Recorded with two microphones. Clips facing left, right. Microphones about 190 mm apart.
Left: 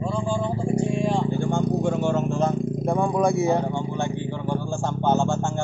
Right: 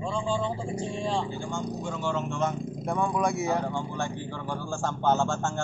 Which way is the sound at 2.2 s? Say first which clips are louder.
Left 6 dB; 35° left (ahead or behind).